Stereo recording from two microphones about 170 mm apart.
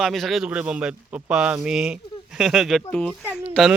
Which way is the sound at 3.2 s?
10° right (ahead or behind).